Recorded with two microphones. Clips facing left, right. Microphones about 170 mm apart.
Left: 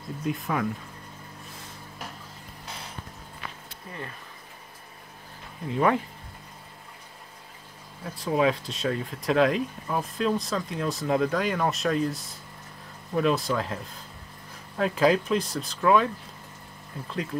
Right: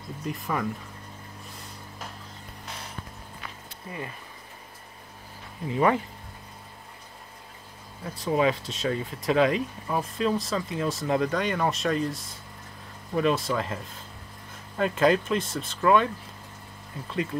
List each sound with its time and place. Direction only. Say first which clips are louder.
0.2 s speech: left 2 dB; centre (ahead or behind)
5.7 s speech: even; centre (ahead or behind)
8.0 s speech: even; centre (ahead or behind)
14.8 s speech: even; centre (ahead or behind)
17.1 s speech: right 2 dB; centre (ahead or behind)